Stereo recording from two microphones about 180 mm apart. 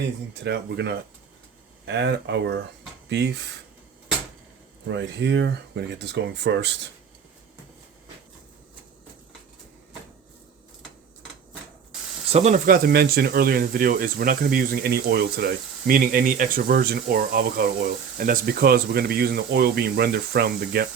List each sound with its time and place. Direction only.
0.3 s speech: 70° right (ahead or behind)
4.9 s speech: 75° right (ahead or behind)
12.3 s speech: 40° right (ahead or behind); by 20.8 s 60° right (ahead or behind)